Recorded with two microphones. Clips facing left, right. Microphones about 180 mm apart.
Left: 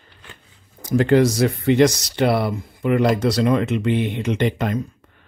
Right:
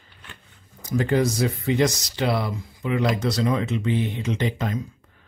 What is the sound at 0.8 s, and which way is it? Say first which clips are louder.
Speech: left 6 dB; 70° left (ahead or behind).